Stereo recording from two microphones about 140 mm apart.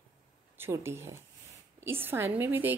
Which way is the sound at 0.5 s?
15° right (ahead or behind).